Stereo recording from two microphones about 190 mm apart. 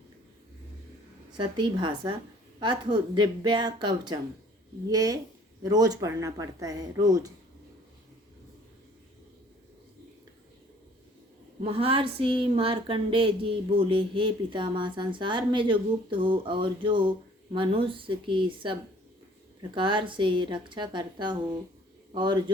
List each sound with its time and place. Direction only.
1.4 s speech: 25° right (ahead or behind)
11.6 s a man's voice: 30° right (ahead or behind)